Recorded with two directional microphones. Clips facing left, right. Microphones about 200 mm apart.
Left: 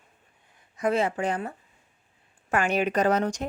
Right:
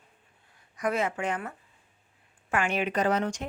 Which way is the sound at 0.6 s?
25° left (ahead or behind).